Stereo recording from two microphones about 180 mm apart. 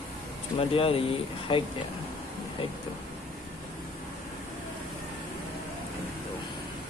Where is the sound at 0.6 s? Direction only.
30° left (ahead or behind).